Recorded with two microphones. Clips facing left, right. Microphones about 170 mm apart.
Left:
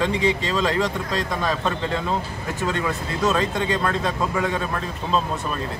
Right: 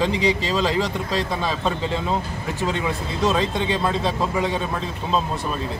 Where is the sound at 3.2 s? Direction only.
25° right (ahead or behind).